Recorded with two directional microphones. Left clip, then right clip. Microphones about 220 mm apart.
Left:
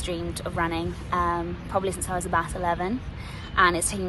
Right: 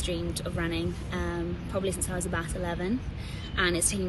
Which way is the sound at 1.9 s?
10° right (ahead or behind).